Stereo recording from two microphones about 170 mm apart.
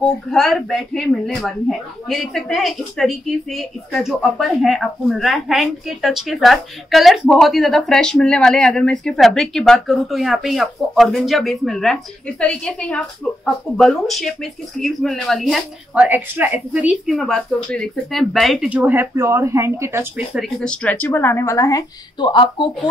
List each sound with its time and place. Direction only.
0.3 s a woman's voice: centre (ahead or behind)
20.3 s a woman's voice: centre (ahead or behind); by 22.7 s 30° left (ahead or behind)